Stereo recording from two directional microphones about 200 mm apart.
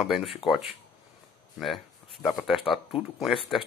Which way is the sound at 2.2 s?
Centre (ahead or behind).